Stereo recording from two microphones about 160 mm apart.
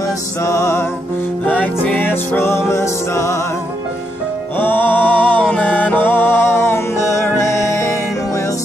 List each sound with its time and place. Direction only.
0.0 s music: 15° left (ahead or behind)
4.6 s music: 10° left (ahead or behind)